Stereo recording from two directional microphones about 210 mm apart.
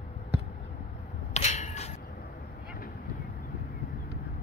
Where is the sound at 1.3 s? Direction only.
30° left (ahead or behind).